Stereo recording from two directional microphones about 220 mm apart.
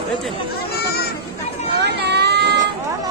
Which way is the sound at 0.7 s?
45° left (ahead or behind).